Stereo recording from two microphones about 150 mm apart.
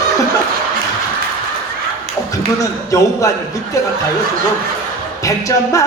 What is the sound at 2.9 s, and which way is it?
Music, 20° left (ahead or behind).